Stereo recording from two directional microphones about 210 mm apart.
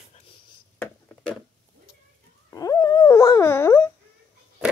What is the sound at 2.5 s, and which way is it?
Dog, 15° left (ahead or behind).